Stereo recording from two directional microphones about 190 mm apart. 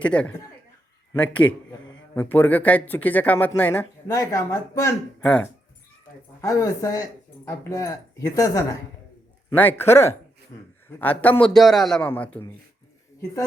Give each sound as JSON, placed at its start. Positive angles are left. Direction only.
{"t": 0.0, "sound": "a man's voice", "side_deg": 5}
{"t": 6.4, "sound": "a man's voice", "side_deg": 20}